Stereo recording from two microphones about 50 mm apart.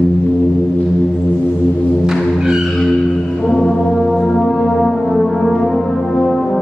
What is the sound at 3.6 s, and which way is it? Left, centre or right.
Brass instrument, centre.